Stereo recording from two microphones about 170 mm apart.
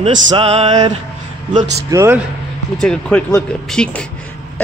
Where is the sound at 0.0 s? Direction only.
35° right (ahead or behind).